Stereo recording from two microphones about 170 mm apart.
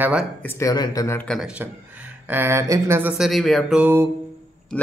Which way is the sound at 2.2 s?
10° right (ahead or behind).